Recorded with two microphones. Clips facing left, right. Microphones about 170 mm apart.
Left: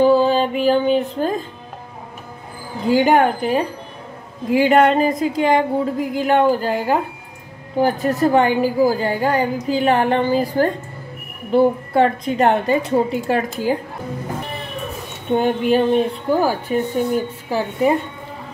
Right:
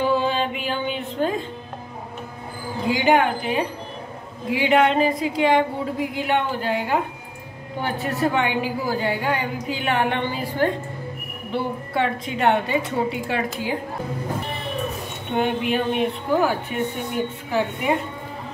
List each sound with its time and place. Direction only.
0.0 s music: 40° left (ahead or behind)
2.9 s a woman's voice: 40° left (ahead or behind)
15.3 s a woman's voice: 35° left (ahead or behind)